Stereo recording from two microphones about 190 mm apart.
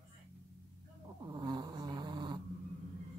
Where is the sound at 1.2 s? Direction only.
20° right (ahead or behind).